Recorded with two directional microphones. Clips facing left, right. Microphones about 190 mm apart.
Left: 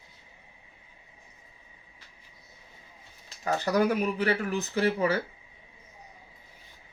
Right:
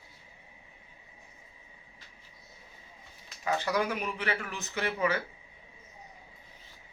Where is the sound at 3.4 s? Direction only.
40° left (ahead or behind).